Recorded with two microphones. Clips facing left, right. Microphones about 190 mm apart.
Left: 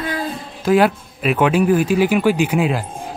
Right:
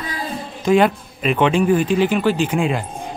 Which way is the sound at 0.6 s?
5° left (ahead or behind).